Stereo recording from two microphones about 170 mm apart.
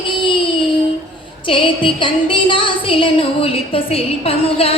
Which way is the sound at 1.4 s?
30° left (ahead or behind).